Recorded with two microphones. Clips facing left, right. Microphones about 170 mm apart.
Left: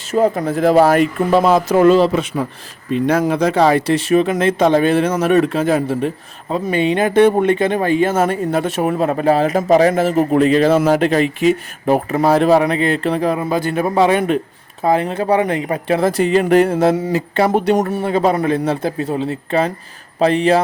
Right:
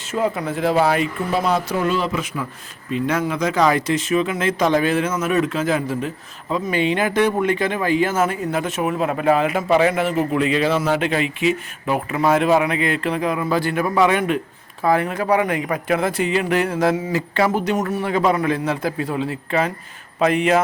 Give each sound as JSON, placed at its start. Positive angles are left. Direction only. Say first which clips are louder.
{"t": 0.1, "sound": "speech", "louder": "left 6 dB", "side_deg": 40}
{"t": 3.8, "sound": "speech", "louder": "left 5 dB", "side_deg": 60}
{"t": 4.3, "sound": "speech", "louder": "left 5 dB", "side_deg": 30}
{"t": 13.5, "sound": "speech", "louder": "left 3 dB", "side_deg": 20}